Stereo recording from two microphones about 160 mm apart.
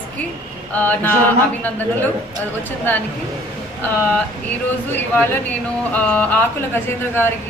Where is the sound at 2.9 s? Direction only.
10° left (ahead or behind).